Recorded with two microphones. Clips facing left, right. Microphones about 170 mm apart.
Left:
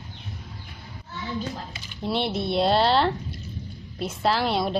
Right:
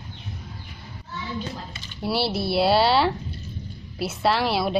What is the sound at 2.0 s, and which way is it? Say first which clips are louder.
A woman's voice: right 1 dB; 5° right (ahead or behind).